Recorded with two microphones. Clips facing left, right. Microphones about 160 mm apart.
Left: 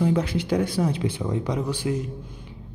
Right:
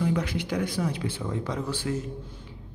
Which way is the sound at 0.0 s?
30° left (ahead or behind).